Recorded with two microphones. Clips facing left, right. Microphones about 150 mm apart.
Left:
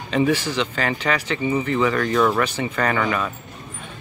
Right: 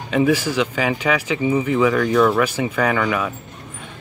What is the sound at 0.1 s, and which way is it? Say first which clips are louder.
Speech: right 2 dB; 10° right (ahead or behind).